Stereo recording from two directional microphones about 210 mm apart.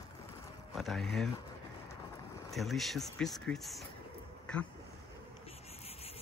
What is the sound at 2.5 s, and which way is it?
Speech, centre (ahead or behind).